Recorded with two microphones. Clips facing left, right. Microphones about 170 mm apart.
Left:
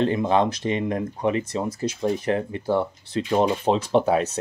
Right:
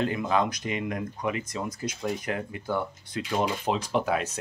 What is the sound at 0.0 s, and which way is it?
Speech, 30° left (ahead or behind).